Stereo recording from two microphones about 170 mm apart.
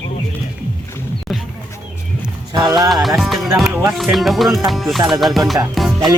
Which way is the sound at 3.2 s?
Centre (ahead or behind).